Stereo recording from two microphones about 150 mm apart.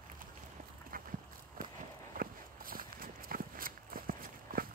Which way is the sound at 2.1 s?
70° right (ahead or behind).